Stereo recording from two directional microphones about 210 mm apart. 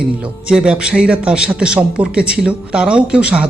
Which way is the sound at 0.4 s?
5° right (ahead or behind).